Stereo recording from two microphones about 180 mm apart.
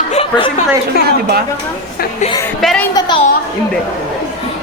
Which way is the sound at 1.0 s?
60° right (ahead or behind).